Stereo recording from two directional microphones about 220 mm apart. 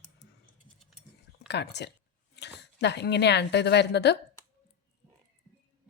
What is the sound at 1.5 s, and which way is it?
A woman's voice, 50° left (ahead or behind).